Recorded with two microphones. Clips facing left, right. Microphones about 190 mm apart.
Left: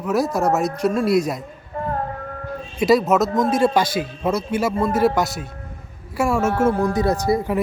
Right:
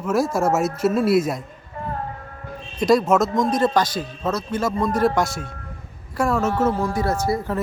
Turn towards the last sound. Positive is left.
turn(degrees=15)  # may be behind; listen again after turning